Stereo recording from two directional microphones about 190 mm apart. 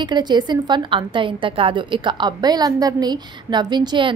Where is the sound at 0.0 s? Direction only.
25° right (ahead or behind).